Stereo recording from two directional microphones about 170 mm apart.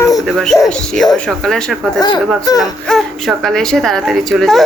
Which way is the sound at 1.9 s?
25° left (ahead or behind).